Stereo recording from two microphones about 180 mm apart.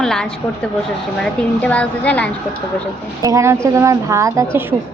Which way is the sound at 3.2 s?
15° right (ahead or behind).